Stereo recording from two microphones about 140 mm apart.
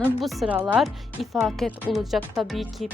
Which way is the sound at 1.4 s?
Centre (ahead or behind).